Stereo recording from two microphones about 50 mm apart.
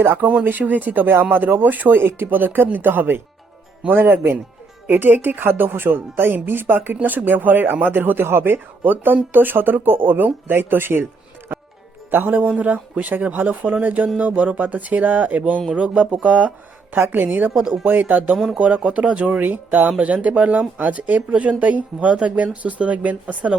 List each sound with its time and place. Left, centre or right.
0.0 s speech: right
2.0 s speech: right
12.1 s speech: right
16.9 s speech: right